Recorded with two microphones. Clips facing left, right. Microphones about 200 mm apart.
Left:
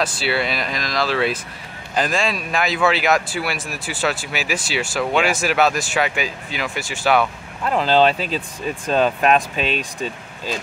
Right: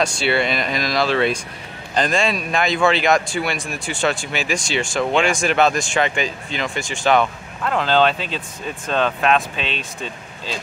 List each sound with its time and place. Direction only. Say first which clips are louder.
0.0 s speech: right 2 dB; 5° left (ahead or behind)
9.6 s speech: left 4 dB; 40° left (ahead or behind)